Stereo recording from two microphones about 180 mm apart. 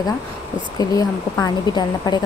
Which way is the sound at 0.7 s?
20° left (ahead or behind).